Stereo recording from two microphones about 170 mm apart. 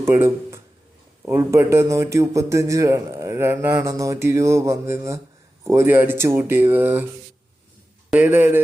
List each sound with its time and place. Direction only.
0.0 s a man's voice: 15° right (ahead or behind)
8.1 s a man's voice: 10° right (ahead or behind)